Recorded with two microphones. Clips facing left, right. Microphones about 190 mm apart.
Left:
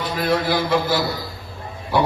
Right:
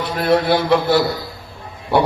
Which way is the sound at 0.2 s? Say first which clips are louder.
Right 5 dB; 65° right (ahead or behind).